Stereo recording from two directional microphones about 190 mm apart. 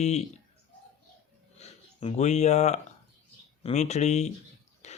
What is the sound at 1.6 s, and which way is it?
Speech, 35° left (ahead or behind).